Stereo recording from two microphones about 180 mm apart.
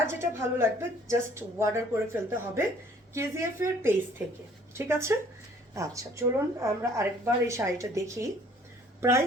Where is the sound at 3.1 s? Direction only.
15° right (ahead or behind).